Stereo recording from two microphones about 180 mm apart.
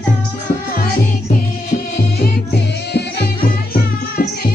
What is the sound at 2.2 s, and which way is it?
Music, 65° left (ahead or behind).